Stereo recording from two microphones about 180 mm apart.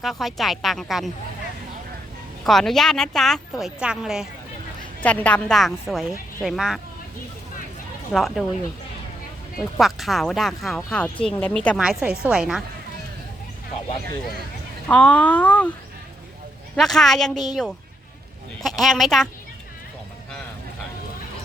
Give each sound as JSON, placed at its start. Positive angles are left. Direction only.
{"t": 0.0, "sound": "speech", "side_deg": 0}
{"t": 2.4, "sound": "speech", "side_deg": 0}
{"t": 5.0, "sound": "speech", "side_deg": 10}
{"t": 8.1, "sound": "speech", "side_deg": 0}
{"t": 9.6, "sound": "speech", "side_deg": 0}
{"t": 14.8, "sound": "speech", "side_deg": 5}
{"t": 16.7, "sound": "speech", "side_deg": 0}